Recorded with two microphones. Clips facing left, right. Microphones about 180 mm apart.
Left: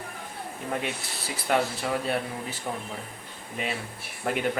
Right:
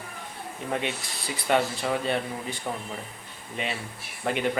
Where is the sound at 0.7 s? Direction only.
Centre (ahead or behind).